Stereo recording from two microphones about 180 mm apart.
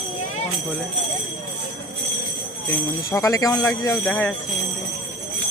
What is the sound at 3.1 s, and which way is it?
Speech, 15° left (ahead or behind).